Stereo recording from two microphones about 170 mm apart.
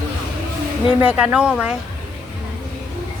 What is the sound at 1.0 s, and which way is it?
Speech, 5° right (ahead or behind).